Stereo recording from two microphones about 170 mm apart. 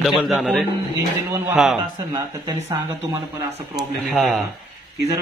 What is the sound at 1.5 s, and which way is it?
Speech, centre (ahead or behind).